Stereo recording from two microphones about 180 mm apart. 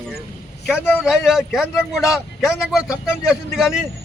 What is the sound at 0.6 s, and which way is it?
A man's voice, 5° right (ahead or behind).